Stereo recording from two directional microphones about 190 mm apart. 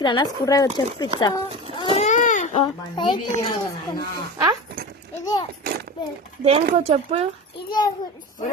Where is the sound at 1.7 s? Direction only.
25° left (ahead or behind).